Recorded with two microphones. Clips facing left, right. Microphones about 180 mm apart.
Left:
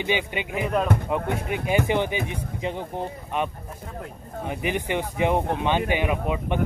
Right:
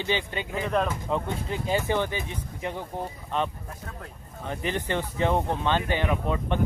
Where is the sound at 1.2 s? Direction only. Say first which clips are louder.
Left 4 dB; 65° left (ahead or behind).